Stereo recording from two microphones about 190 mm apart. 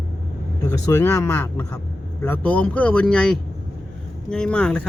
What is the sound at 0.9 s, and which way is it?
Speech, 15° left (ahead or behind).